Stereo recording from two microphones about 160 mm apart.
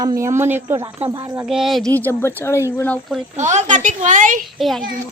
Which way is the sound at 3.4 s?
50° right (ahead or behind).